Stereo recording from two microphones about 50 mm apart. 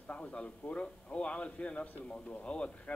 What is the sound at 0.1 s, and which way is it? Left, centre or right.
A man's voice, left.